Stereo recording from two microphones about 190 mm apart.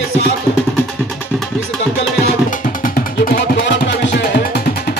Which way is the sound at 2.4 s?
45° left (ahead or behind).